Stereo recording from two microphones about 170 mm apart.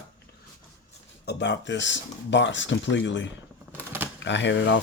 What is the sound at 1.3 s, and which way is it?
Speech, 90° left.